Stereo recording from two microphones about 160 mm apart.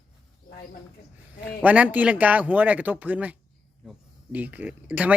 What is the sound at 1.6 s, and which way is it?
A man's voice, 10° right (ahead or behind).